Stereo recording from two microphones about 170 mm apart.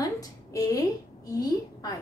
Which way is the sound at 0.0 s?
20° left (ahead or behind).